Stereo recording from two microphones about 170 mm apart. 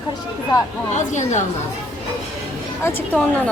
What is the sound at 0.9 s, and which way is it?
Speech, 45° left (ahead or behind).